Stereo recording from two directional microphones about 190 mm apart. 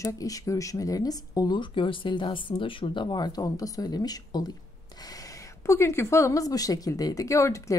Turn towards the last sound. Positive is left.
turn(degrees=15)  # may be behind; listen again after turning